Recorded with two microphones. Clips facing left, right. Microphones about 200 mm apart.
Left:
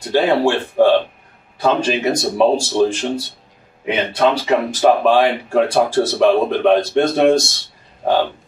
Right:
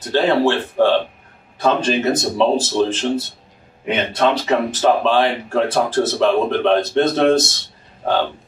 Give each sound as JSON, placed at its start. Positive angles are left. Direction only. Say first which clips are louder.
{"t": 0.1, "sound": "speech", "louder": "left 1 dB", "side_deg": 20}